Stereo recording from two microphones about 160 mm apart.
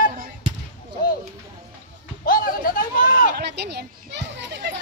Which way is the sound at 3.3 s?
90° right.